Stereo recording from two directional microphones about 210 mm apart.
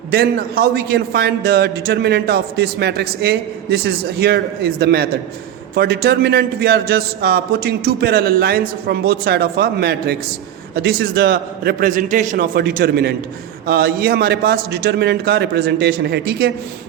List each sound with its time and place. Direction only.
0.1 s a man's voice: 50° right (ahead or behind)